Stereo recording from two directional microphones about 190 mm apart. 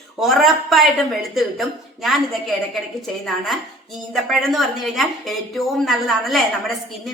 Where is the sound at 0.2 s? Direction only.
Centre (ahead or behind).